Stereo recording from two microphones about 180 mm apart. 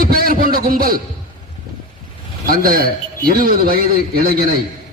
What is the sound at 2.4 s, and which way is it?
A man's voice, 55° right (ahead or behind).